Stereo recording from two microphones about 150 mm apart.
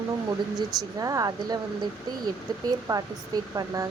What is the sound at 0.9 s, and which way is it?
Speech, 25° right (ahead or behind).